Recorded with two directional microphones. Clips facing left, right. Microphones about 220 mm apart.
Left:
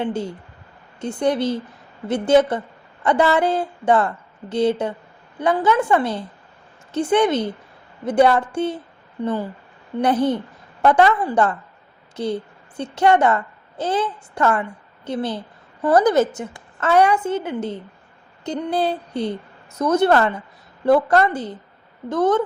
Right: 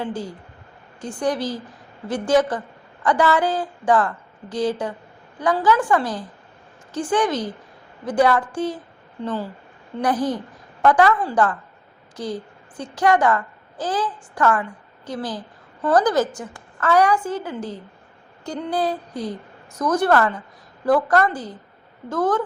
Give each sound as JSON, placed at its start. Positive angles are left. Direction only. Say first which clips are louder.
{"t": 0.0, "sound": "a woman's voice", "louder": "left 4 dB", "side_deg": 25}
{"t": 10.0, "sound": "a woman's voice", "louder": "left 3 dB", "side_deg": 25}